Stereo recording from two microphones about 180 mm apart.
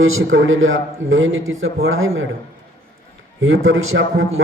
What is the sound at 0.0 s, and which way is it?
A man's voice, 90° right.